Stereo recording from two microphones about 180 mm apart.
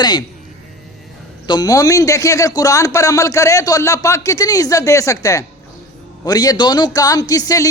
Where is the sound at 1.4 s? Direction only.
20° left (ahead or behind).